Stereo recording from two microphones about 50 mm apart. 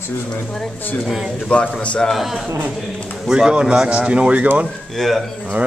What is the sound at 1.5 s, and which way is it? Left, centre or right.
Speech, left.